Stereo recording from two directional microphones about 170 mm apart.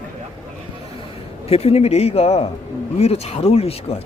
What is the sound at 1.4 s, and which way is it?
A man's voice, 35° left (ahead or behind).